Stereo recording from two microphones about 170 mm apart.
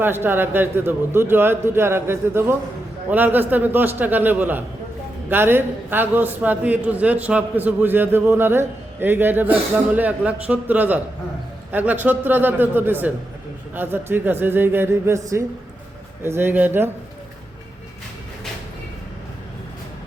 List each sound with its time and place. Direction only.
0.0 s a man's voice: 10° right (ahead or behind)